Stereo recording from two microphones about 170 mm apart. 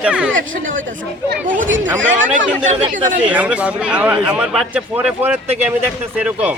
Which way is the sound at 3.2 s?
10° right (ahead or behind).